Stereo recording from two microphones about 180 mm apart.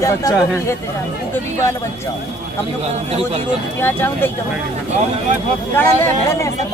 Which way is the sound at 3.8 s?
10° left (ahead or behind).